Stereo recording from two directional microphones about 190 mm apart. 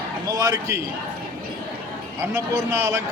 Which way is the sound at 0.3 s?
20° right (ahead or behind).